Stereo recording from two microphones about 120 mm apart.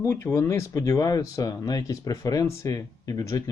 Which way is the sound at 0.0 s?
20° left (ahead or behind).